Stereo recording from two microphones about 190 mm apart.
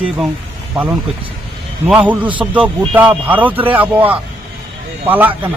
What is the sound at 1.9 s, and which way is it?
A man's voice, 5° right (ahead or behind).